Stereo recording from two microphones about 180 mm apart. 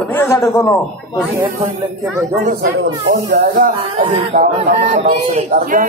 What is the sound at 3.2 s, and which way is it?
A man's voice, 50° right (ahead or behind).